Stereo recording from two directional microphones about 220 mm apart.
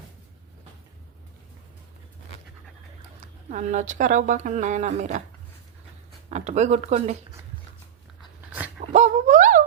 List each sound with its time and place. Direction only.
3.5 s speech: 35° right (ahead or behind)
6.3 s speech: 30° right (ahead or behind)
8.9 s a sound: 35° right (ahead or behind)